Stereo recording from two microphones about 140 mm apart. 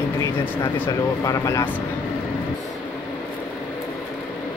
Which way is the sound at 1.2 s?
25° left (ahead or behind).